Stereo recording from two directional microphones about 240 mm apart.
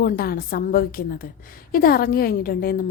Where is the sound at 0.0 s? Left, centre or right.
Left.